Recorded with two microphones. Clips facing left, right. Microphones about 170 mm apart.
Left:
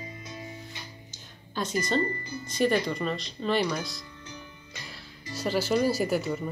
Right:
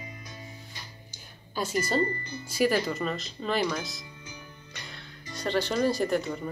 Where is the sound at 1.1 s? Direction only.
5° right (ahead or behind).